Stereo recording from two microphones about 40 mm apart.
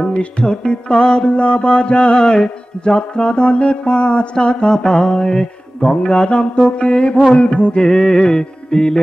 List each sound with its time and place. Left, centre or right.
0.0 s music: left
2.1 s music: centre
7.8 s music: centre